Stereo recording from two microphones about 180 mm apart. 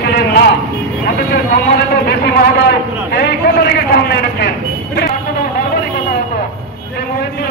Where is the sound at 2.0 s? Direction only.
65° left (ahead or behind).